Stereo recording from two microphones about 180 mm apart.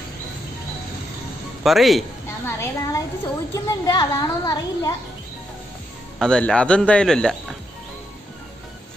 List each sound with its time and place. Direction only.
1.6 s a man's voice: centre (ahead or behind)
2.4 s a sound: 15° left (ahead or behind)
6.1 s speech: 5° left (ahead or behind)